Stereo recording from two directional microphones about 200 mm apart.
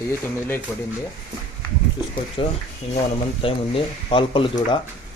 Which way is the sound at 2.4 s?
25° left (ahead or behind).